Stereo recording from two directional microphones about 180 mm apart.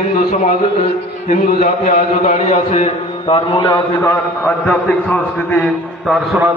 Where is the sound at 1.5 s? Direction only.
50° left (ahead or behind); by 3.8 s 30° left (ahead or behind).